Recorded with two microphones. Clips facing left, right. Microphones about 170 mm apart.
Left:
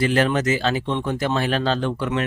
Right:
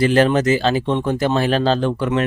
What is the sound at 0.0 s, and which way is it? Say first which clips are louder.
Speech: right 5 dB; 30° right (ahead or behind).